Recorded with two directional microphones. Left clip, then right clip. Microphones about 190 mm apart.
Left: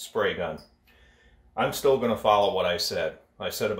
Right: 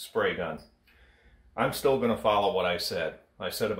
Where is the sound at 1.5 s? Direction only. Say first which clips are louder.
Left 3 dB; 10° left (ahead or behind).